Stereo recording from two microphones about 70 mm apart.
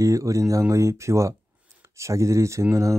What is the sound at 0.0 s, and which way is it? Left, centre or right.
Speech, right.